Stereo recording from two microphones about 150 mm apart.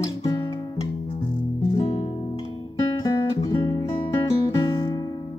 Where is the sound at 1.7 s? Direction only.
35° left (ahead or behind).